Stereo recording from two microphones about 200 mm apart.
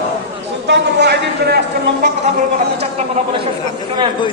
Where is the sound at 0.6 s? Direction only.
60° right (ahead or behind).